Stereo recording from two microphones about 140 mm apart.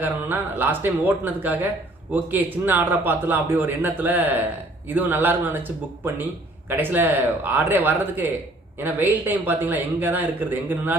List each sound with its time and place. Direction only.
0.0 s a man's voice: 15° right (ahead or behind)